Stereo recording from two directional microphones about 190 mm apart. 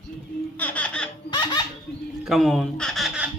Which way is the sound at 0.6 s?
5° left (ahead or behind).